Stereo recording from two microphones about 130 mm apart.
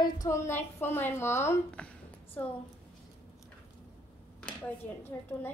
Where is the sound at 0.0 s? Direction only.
30° left (ahead or behind).